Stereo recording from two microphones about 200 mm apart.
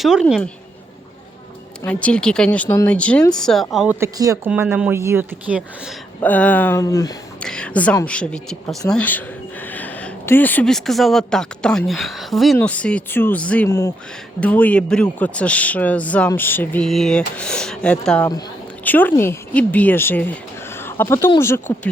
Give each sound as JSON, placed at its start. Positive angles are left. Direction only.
{"t": 0.0, "sound": "a woman's voice", "side_deg": 0}
{"t": 1.8, "sound": "a man's voice", "side_deg": 5}
{"t": 4.0, "sound": "speech", "side_deg": -15}
{"t": 6.1, "sound": "a man's voice", "side_deg": 10}
{"t": 7.3, "sound": "a woman's voice", "side_deg": 5}